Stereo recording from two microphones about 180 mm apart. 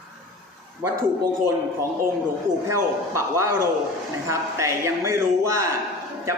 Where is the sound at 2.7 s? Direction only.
15° right (ahead or behind).